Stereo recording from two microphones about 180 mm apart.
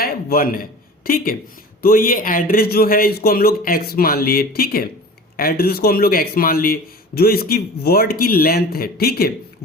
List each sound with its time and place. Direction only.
0.0 s a man's voice: 55° left (ahead or behind)